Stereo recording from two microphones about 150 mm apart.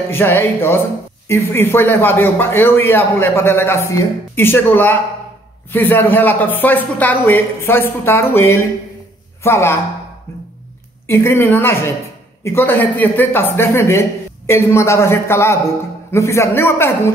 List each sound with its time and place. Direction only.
0.1 s speech: 15° left (ahead or behind)
11.1 s speech: 15° left (ahead or behind)